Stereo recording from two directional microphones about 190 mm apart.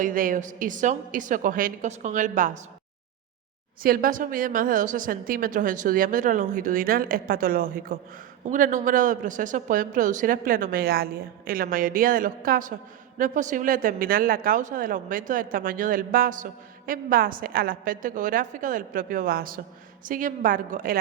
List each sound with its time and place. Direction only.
0.0 s a man's voice: 45° right (ahead or behind)
3.8 s a man's voice: 50° right (ahead or behind)